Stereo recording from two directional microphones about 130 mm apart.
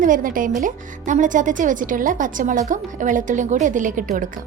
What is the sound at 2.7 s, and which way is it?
A woman's voice, 80° right.